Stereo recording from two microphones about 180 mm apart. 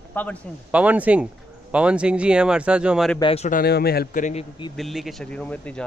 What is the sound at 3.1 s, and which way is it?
Speech, 30° left (ahead or behind).